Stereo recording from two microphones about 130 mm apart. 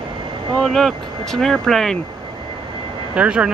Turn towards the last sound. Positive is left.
turn(degrees=-10)  # may be behind; listen again after turning